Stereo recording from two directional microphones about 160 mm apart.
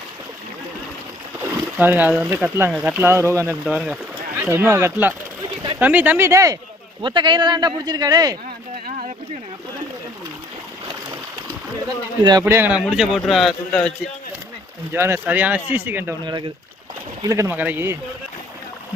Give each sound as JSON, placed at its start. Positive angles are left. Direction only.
{"t": 1.8, "sound": "speech", "side_deg": -10}
{"t": 3.4, "sound": "speech", "side_deg": 0}
{"t": 4.5, "sound": "speech", "side_deg": -15}
{"t": 12.2, "sound": "speech", "side_deg": -25}
{"t": 12.8, "sound": "a man's voice", "side_deg": -5}
{"t": 15.0, "sound": "speech", "side_deg": -15}
{"t": 17.2, "sound": "speech", "side_deg": -20}